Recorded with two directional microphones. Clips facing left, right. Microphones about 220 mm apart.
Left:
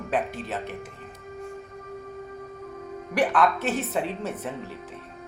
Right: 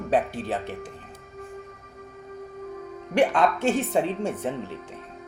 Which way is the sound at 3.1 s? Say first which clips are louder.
Right 2 dB; 30° right (ahead or behind).